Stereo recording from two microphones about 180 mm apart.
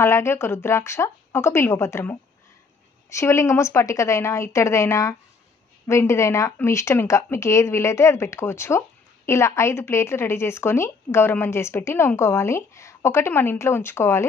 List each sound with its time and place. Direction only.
0.0 s speech: 15° left (ahead or behind)